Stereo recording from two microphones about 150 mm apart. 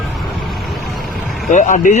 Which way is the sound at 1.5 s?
55° left (ahead or behind).